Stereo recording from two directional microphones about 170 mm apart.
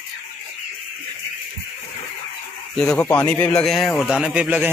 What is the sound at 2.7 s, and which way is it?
A man's voice, 5° left (ahead or behind).